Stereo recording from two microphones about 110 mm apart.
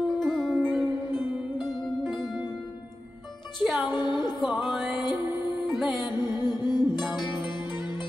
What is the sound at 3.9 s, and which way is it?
Music, 40° left (ahead or behind).